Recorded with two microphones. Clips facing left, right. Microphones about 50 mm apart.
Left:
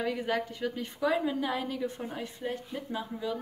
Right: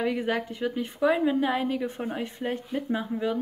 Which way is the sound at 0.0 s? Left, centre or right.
Right.